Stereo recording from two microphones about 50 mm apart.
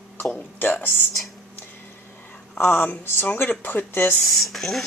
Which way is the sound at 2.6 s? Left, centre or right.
Left.